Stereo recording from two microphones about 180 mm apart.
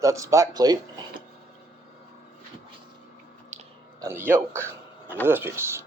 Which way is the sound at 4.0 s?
15° right (ahead or behind).